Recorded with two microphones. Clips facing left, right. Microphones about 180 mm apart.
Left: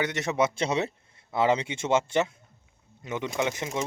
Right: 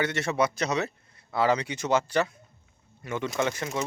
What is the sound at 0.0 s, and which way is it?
Speech, 20° left (ahead or behind).